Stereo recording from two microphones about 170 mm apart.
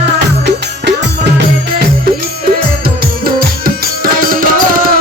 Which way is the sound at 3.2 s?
60° right (ahead or behind).